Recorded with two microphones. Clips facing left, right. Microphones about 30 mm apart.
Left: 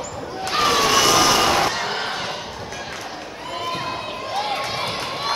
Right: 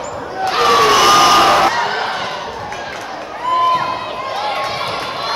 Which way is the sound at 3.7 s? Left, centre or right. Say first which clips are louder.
Right 9 dB; centre.